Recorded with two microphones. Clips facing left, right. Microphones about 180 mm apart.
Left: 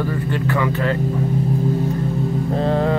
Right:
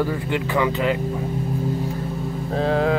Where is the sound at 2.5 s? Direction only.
Centre (ahead or behind).